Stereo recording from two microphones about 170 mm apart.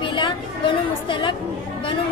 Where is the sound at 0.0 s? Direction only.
30° left (ahead or behind).